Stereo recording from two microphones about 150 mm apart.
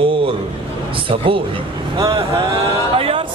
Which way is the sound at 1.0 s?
35° right (ahead or behind).